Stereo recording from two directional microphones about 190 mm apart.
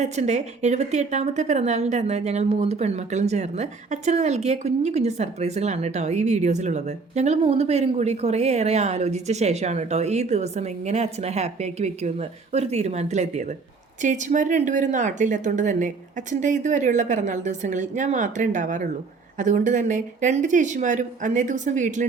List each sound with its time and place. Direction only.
0.0 s a woman's voice: 35° right (ahead or behind)